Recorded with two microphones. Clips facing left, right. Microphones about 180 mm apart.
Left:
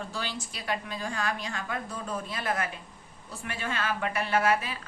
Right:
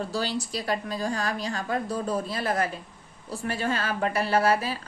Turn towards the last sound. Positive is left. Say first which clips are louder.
# right 3 dB
turn(degrees=-35)  # may be behind; listen again after turning